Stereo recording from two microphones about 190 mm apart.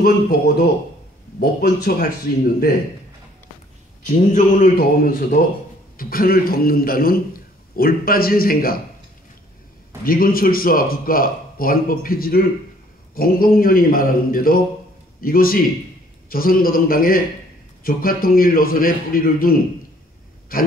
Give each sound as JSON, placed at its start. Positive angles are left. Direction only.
{"t": 0.0, "sound": "a man's voice", "side_deg": 50}
{"t": 4.0, "sound": "a man's voice", "side_deg": 40}
{"t": 10.0, "sound": "a man's voice", "side_deg": 50}